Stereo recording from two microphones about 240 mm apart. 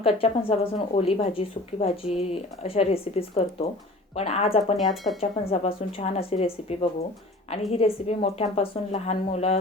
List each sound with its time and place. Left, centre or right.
0.0 s speech: left